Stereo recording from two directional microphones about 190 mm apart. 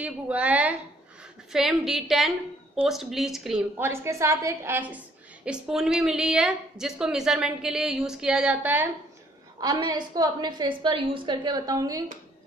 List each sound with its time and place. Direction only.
0.0 s a woman's voice: 5° right (ahead or behind)
3.7 s a woman's voice: 15° right (ahead or behind)
9.6 s a woman's voice: 20° right (ahead or behind)